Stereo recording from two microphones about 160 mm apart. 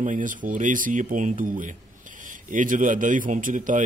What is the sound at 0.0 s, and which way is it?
A man's voice, 55° right (ahead or behind).